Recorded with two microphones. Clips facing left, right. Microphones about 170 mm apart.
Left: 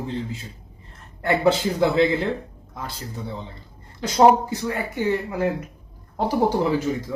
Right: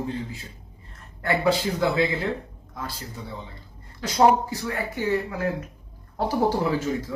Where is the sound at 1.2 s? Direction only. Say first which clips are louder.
Left 3 dB; 25° left (ahead or behind).